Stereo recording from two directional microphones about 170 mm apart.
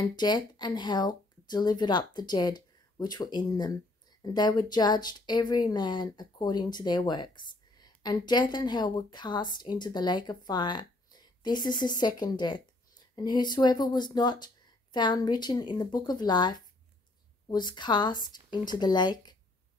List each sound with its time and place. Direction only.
0.1 s speech: 25° left (ahead or behind)